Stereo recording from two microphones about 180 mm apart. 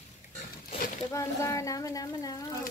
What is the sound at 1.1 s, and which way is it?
Speech, 15° left (ahead or behind).